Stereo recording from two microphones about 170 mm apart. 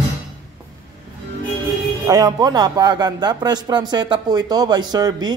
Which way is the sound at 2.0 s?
20° right (ahead or behind).